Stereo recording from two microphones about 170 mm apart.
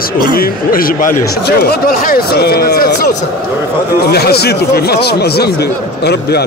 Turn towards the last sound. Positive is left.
turn(degrees=75)  # may be behind; listen again after turning